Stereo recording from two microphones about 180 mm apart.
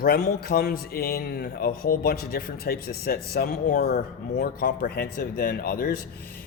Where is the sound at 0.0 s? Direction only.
55° left (ahead or behind).